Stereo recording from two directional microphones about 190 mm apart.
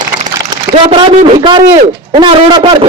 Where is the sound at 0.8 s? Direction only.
25° right (ahead or behind).